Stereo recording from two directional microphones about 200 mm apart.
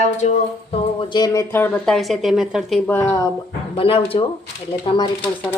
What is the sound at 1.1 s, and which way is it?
Speech, 20° left (ahead or behind).